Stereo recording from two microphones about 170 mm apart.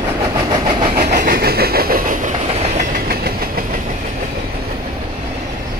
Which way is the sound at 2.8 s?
60° right (ahead or behind).